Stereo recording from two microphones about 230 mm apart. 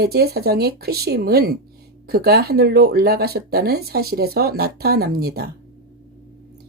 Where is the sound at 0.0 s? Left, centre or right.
Right.